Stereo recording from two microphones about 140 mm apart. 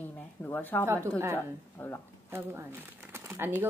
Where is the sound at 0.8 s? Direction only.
15° right (ahead or behind).